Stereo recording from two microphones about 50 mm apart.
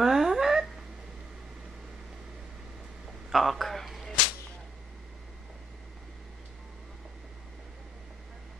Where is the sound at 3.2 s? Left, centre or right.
Centre.